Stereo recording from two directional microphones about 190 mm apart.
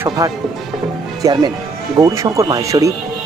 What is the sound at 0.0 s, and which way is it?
Speech, 20° right (ahead or behind).